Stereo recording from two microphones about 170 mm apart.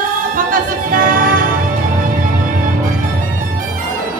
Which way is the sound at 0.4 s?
55° right (ahead or behind).